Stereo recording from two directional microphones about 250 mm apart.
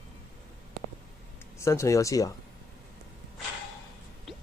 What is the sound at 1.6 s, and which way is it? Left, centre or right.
Speech, centre.